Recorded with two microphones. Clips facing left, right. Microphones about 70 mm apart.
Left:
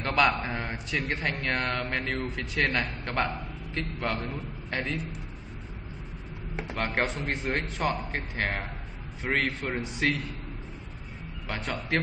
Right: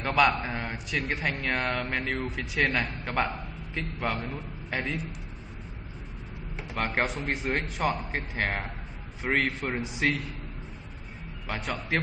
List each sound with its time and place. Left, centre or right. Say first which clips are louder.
0.0 s a man's voice: right 1 dB; centre
6.7 s a man's voice: right 1 dB; centre
11.4 s a man's voice: even; centre